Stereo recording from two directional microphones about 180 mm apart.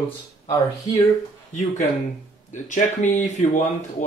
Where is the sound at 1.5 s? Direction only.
40° left (ahead or behind).